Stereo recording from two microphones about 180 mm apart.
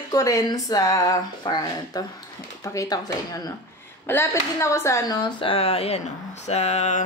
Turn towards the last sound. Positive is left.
turn(degrees=40)  # may be behind; listen again after turning